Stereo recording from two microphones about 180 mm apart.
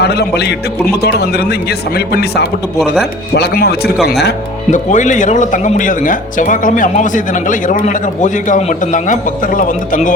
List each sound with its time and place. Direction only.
0.0 s speech: 65° left (ahead or behind)
4.7 s speech: 45° left (ahead or behind)